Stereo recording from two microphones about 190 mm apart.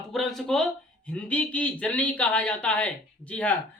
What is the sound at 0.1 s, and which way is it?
Speech, centre (ahead or behind).